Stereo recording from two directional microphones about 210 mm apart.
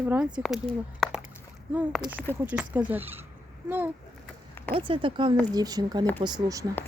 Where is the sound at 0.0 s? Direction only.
10° right (ahead or behind).